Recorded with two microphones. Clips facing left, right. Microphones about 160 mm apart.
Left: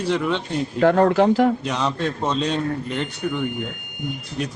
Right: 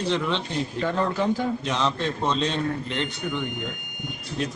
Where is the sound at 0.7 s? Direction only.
70° left (ahead or behind); by 1.5 s 85° left.